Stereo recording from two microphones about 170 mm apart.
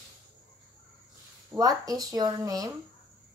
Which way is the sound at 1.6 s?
20° right (ahead or behind).